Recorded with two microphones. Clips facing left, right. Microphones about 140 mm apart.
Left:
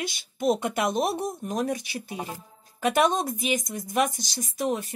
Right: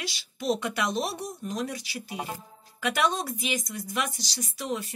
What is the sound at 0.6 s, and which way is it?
Speech, 25° left (ahead or behind).